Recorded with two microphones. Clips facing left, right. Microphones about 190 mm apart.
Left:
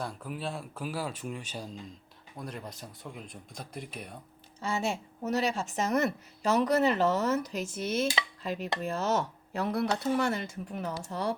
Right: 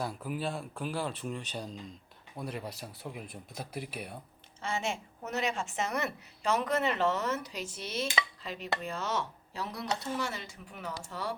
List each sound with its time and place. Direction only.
0.0 s speech: 5° right (ahead or behind)
4.6 s a woman's voice: 35° left (ahead or behind)